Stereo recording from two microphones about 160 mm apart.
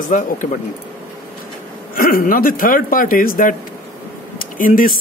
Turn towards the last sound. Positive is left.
turn(degrees=60)  # may be behind; listen again after turning